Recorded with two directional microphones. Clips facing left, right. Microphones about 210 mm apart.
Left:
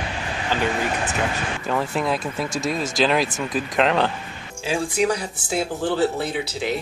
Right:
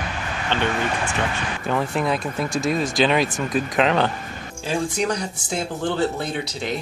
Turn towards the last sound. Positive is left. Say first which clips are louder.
# left 1 dB
turn(degrees=5)  # may be behind; listen again after turning